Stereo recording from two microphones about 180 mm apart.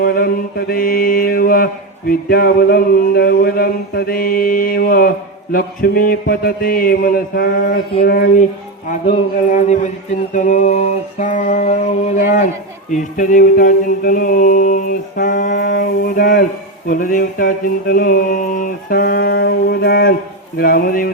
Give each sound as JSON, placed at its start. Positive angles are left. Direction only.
{"t": 0.0, "sound": "mantra", "side_deg": 55}
{"t": 8.9, "sound": "mantra", "side_deg": 45}